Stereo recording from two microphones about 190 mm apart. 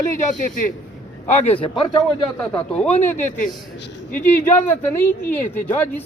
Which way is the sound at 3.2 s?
40° left (ahead or behind).